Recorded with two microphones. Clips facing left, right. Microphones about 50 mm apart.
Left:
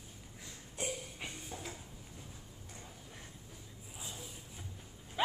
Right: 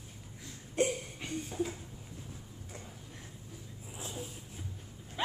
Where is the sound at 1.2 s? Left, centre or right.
Centre.